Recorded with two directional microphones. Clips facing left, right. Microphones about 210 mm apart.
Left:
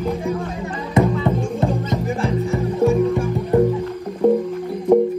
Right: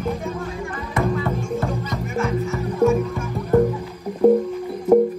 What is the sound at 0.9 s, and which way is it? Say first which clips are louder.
Music: left 5 dB; 25° left (ahead or behind).